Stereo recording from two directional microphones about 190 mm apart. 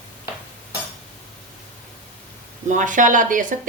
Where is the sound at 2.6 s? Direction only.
40° right (ahead or behind).